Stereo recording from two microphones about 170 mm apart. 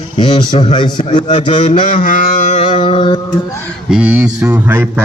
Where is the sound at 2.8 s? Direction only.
30° left (ahead or behind).